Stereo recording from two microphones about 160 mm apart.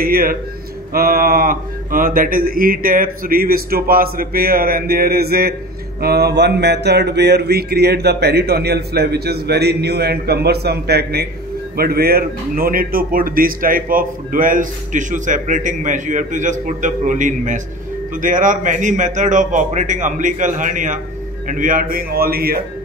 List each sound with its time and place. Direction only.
0.0 s a man's voice: 65° right (ahead or behind)